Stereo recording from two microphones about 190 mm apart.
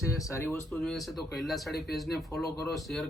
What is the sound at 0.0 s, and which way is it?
Speech, 15° left (ahead or behind).